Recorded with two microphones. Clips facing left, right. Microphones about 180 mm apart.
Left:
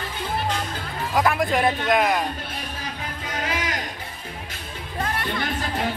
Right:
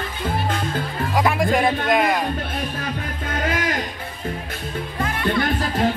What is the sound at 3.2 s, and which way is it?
Music, 50° right (ahead or behind).